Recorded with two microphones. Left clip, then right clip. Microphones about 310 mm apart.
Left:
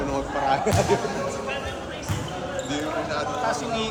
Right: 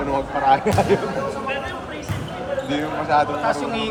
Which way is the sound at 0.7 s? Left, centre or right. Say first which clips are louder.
Right 4 dB; right.